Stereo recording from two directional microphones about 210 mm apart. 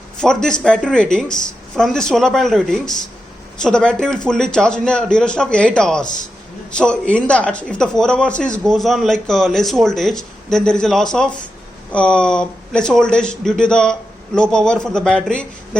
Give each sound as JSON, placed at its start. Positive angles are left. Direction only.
{"t": 0.2, "sound": "speech", "side_deg": 5}